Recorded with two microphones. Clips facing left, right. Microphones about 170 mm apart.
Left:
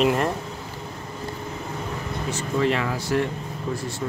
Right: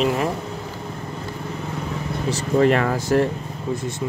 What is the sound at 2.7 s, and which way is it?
Speech, 50° right (ahead or behind).